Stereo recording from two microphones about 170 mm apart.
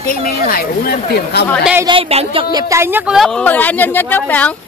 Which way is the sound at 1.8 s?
35° right (ahead or behind).